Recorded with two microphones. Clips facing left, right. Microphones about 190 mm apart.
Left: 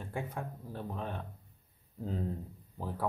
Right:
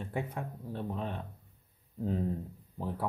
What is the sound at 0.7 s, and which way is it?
Speech, 25° right (ahead or behind).